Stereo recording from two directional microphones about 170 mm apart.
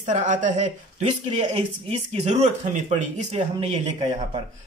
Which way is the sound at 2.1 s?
40° right (ahead or behind).